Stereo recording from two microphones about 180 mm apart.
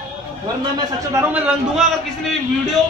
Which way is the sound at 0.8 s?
15° right (ahead or behind).